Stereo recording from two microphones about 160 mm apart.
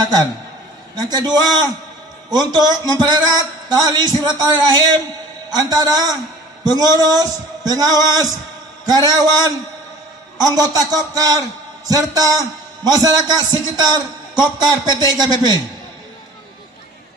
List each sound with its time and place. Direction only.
0.9 s a man's voice: 25° right (ahead or behind)